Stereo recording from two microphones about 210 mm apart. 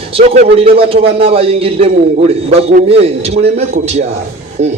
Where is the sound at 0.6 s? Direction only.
25° right (ahead or behind).